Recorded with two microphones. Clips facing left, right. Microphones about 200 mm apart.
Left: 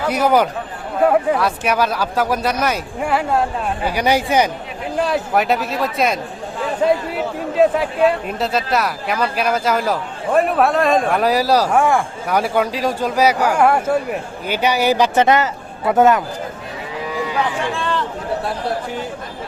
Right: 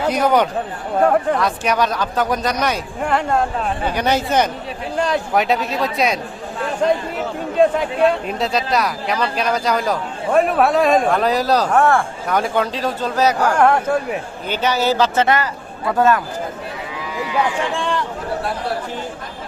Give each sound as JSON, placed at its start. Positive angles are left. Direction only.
{"t": 0.1, "sound": "speech", "side_deg": 5}
{"t": 7.5, "sound": "a man's voice", "side_deg": 5}
{"t": 17.7, "sound": "a sound", "side_deg": -15}